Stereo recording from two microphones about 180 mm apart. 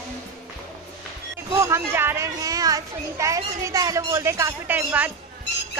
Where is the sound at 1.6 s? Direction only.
15° right (ahead or behind).